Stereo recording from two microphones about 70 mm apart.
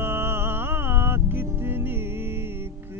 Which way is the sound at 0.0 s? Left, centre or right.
Right.